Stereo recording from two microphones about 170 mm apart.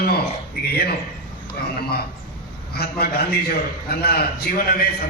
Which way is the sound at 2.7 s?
70° left (ahead or behind).